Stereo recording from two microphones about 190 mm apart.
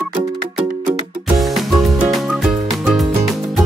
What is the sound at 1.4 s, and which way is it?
Music, centre (ahead or behind).